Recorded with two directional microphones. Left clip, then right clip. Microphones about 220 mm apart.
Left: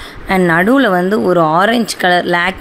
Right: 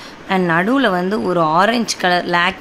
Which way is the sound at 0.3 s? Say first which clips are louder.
Left 5 dB; 20° left (ahead or behind).